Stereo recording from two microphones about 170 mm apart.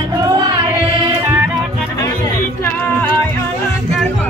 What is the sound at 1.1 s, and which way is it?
Music, 15° right (ahead or behind).